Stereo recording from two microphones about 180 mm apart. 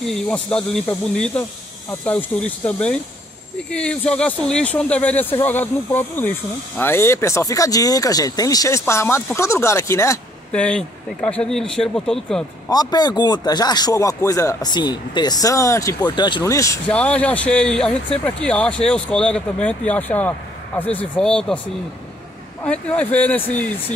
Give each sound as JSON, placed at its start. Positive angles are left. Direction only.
{"t": 0.0, "sound": "speech", "side_deg": 5}
{"t": 12.6, "sound": "speech", "side_deg": 20}
{"t": 16.8, "sound": "speech", "side_deg": 5}
{"t": 22.6, "sound": "speech", "side_deg": 10}